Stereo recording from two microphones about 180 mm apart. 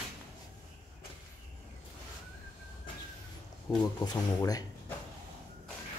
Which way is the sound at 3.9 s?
20° left (ahead or behind).